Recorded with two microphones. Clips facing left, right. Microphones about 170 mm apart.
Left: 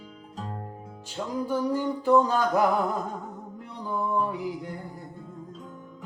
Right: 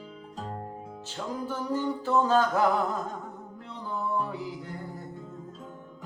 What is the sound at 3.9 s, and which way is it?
Music, 15° left (ahead or behind).